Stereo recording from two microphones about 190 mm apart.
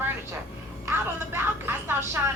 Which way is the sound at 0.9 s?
10° right (ahead or behind).